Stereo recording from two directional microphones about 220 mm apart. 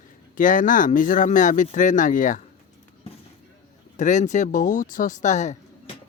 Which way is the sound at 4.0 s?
35° left (ahead or behind).